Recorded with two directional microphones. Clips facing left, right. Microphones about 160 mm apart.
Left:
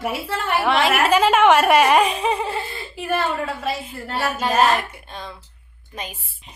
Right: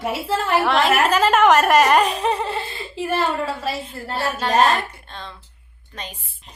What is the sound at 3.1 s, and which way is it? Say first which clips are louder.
Speech: even; 30° right (ahead or behind).